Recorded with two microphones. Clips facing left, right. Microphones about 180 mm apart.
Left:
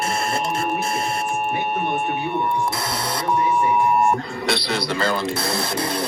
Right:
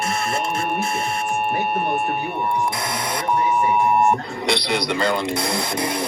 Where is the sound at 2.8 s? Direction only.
15° right (ahead or behind).